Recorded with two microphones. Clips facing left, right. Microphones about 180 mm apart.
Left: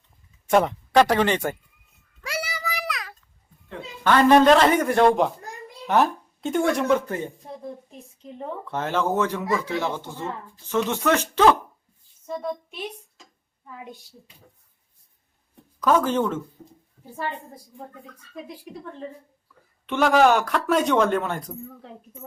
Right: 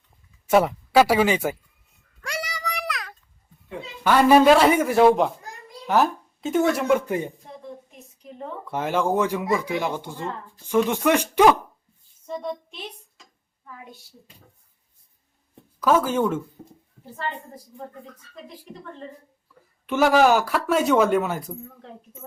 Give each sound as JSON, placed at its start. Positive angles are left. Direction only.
{"t": 0.4, "sound": "speech", "side_deg": -5}
{"t": 2.2, "sound": "child singing", "side_deg": 5}
{"t": 3.7, "sound": "speech", "side_deg": -10}
{"t": 7.9, "sound": "a sound", "side_deg": 30}
{"t": 8.6, "sound": "speech", "side_deg": -10}
{"t": 12.2, "sound": "speech", "side_deg": 5}
{"t": 15.8, "sound": "speech", "side_deg": -5}
{"t": 19.9, "sound": "speech", "side_deg": -5}